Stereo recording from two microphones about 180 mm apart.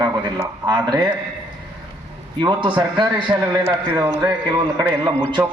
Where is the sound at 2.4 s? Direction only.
25° right (ahead or behind).